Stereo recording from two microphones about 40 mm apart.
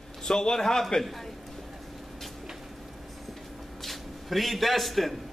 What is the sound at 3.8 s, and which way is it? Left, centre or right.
A man's voice, centre.